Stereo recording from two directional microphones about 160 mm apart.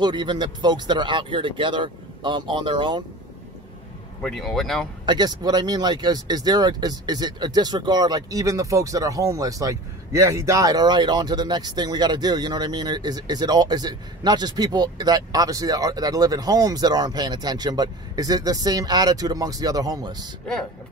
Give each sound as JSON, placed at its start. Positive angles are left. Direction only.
{"t": 0.0, "sound": "speech", "side_deg": -30}
{"t": 4.2, "sound": "speech", "side_deg": 0}
{"t": 5.0, "sound": "speech", "side_deg": -25}